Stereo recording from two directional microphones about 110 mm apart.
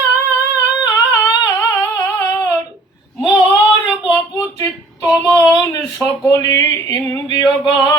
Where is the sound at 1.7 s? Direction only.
30° left (ahead or behind).